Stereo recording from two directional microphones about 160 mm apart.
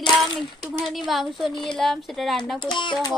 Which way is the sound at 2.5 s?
30° left (ahead or behind).